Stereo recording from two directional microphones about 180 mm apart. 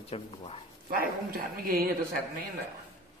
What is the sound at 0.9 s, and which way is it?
Speech, 55° right (ahead or behind).